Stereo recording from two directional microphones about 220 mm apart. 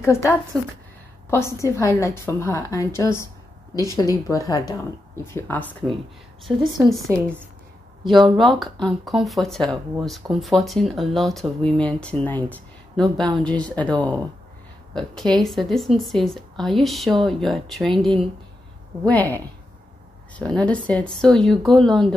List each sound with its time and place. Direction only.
0.0 s a woman's voice: 15° left (ahead or behind)
8.0 s speech: centre (ahead or behind)
15.0 s a woman's voice: centre (ahead or behind)